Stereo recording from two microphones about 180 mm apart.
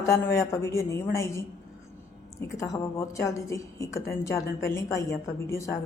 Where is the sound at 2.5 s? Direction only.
15° left (ahead or behind).